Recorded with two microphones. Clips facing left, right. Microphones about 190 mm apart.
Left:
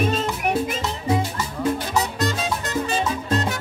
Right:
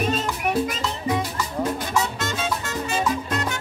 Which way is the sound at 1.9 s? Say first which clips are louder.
Left 1 dB; 35° left (ahead or behind).